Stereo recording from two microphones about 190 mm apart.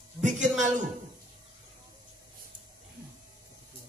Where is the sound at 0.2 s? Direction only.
40° right (ahead or behind).